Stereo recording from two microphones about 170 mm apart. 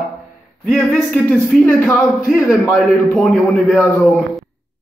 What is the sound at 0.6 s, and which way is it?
Speech, centre (ahead or behind).